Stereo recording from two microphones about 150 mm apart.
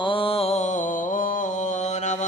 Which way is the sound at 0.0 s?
35° left (ahead or behind).